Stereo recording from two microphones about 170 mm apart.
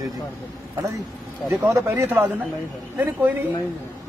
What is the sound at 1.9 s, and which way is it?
Speech, 15° right (ahead or behind).